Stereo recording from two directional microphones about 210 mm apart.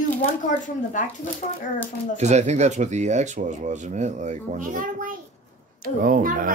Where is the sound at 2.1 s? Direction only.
35° right (ahead or behind).